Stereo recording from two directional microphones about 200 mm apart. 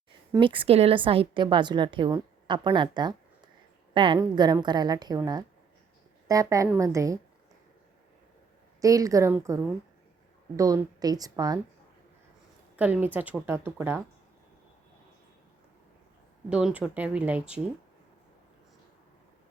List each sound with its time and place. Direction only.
0.3 s a woman's voice: 25° right (ahead or behind)
8.8 s a woman's voice: 15° right (ahead or behind)
12.7 s a woman's voice: 10° right (ahead or behind)
16.5 s speech: 5° right (ahead or behind)